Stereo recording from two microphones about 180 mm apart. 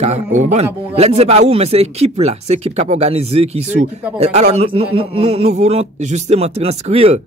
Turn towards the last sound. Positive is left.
turn(degrees=-35)  # may be behind; listen again after turning